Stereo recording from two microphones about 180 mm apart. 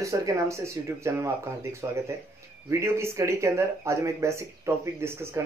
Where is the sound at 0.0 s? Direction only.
15° right (ahead or behind).